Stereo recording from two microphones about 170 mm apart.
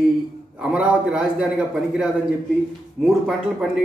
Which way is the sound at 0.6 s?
5° right (ahead or behind).